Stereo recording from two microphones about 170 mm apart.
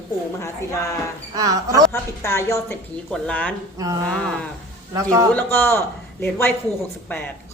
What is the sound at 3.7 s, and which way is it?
Speech, 20° right (ahead or behind).